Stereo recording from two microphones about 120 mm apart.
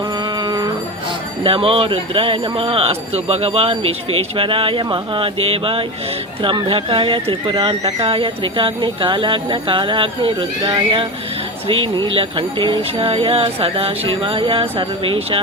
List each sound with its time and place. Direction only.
0.4 s music: 35° right (ahead or behind)
1.5 s speech: 50° right (ahead or behind)